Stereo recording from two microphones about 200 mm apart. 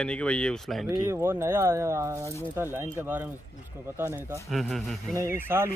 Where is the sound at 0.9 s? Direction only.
15° right (ahead or behind).